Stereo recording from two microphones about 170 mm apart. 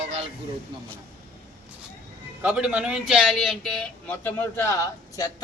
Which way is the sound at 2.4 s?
5° right (ahead or behind).